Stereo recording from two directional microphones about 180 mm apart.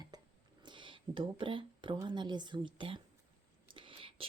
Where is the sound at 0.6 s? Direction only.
25° right (ahead or behind).